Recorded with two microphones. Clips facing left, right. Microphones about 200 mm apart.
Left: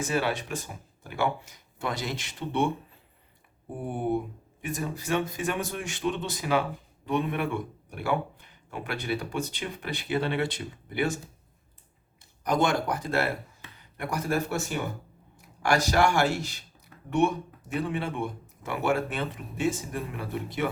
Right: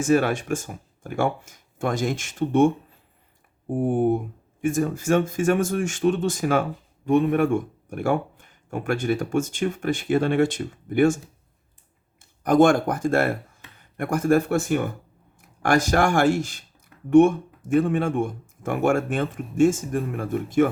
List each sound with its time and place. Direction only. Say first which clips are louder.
0.0 s speech: right 8 dB; 50° right (ahead or behind)
12.4 s speech: right 9 dB; 50° right (ahead or behind)